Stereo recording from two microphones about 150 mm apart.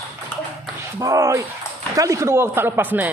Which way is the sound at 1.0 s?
20° right (ahead or behind).